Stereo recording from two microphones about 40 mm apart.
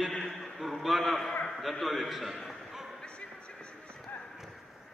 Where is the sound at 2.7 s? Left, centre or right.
Centre.